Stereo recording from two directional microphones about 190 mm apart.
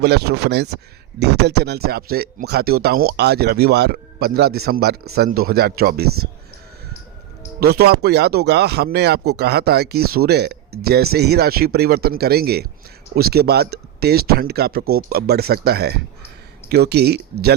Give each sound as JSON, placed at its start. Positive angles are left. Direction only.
{"t": 0.0, "sound": "speech", "side_deg": -60}
{"t": 7.6, "sound": "speech", "side_deg": -55}